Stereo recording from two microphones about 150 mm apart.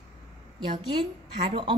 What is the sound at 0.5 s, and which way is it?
A woman's voice, 30° right (ahead or behind).